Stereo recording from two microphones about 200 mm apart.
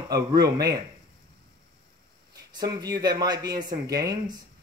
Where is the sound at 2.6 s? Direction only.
20° right (ahead or behind).